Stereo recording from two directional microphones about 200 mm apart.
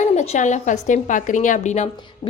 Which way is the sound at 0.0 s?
35° left (ahead or behind).